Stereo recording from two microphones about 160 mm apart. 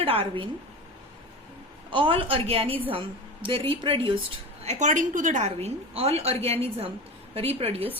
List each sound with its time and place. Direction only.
0.0 s a woman's voice: 35° right (ahead or behind)
1.9 s a woman's voice: 30° right (ahead or behind)
4.6 s a woman's voice: 45° right (ahead or behind)